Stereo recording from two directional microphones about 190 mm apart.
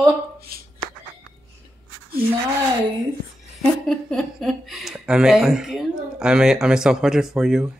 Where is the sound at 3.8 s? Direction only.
Centre (ahead or behind).